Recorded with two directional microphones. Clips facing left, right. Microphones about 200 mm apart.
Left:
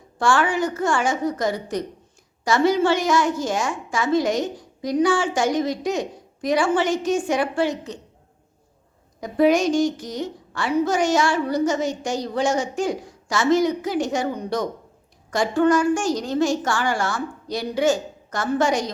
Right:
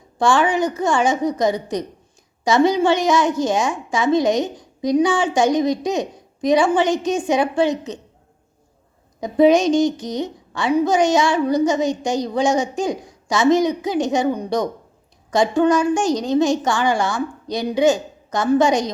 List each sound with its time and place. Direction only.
0.2 s a woman's voice: 20° right (ahead or behind)
9.2 s a woman's voice: 20° right (ahead or behind)